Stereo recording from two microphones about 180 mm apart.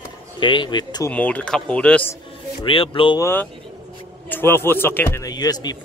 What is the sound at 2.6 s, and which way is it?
Speech, 30° left (ahead or behind).